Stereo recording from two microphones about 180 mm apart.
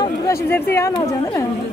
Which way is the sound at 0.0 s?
15° left (ahead or behind).